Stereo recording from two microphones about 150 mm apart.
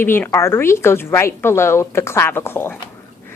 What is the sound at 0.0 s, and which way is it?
A woman's voice, 15° left (ahead or behind).